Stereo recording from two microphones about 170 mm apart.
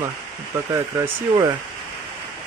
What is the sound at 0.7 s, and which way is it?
Speech, 15° right (ahead or behind).